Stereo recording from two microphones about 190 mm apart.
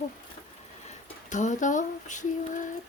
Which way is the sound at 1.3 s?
40° left (ahead or behind).